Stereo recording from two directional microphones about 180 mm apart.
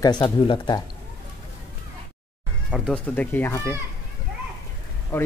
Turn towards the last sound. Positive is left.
turn(degrees=10)  # may be behind; listen again after turning